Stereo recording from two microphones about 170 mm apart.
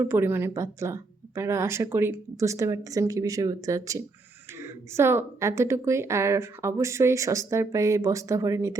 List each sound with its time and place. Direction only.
0.0 s a woman's voice: 15° right (ahead or behind)